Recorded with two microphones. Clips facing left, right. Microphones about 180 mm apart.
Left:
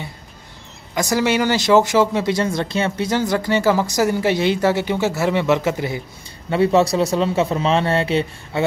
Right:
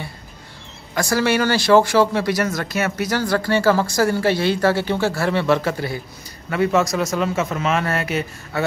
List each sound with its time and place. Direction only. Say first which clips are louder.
0.9 s speech: even; 20° left (ahead or behind)
6.5 s speech: left 3 dB; 30° left (ahead or behind)